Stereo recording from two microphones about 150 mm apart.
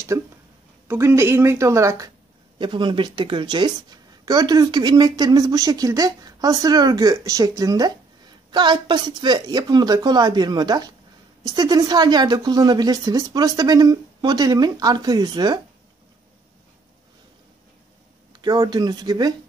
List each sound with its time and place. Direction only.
0.1 s speech: 15° right (ahead or behind)
2.6 s speech: 30° right (ahead or behind)
18.3 s speech: 30° right (ahead or behind)